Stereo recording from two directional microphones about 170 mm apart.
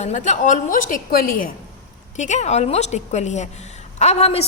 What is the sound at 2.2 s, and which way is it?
A woman's voice, 45° left (ahead or behind).